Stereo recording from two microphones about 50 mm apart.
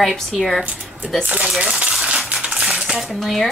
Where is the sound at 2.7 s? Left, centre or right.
Centre.